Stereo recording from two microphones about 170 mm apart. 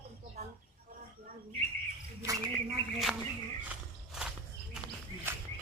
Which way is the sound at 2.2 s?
20° right (ahead or behind).